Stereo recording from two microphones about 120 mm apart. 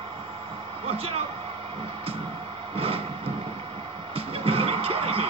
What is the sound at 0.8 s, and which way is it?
Speech, 50° right (ahead or behind).